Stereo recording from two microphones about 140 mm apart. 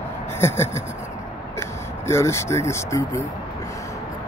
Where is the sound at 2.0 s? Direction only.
20° left (ahead or behind).